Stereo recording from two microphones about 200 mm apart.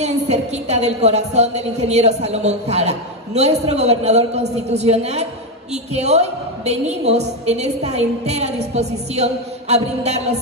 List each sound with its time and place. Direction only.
0.0 s a woman's voice: 35° right (ahead or behind)